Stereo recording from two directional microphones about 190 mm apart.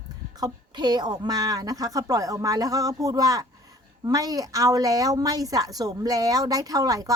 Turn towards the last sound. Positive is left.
turn(degrees=-20)  # may be behind; listen again after turning